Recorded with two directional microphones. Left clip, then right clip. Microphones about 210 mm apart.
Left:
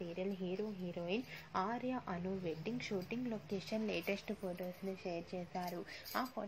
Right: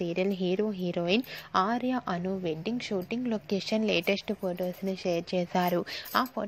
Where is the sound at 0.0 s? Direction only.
50° right (ahead or behind).